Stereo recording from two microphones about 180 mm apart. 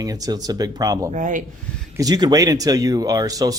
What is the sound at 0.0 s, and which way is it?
Speech, 20° right (ahead or behind).